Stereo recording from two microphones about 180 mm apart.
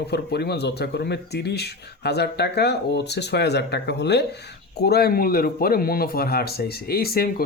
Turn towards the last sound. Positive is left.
turn(degrees=55)  # may be behind; listen again after turning